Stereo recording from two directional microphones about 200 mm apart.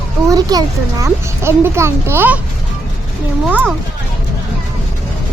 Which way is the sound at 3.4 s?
10° right (ahead or behind).